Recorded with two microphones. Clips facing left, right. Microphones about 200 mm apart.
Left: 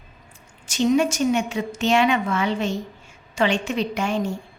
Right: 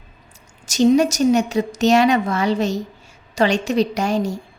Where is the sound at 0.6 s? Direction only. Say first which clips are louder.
Right 5 dB; 40° right (ahead or behind).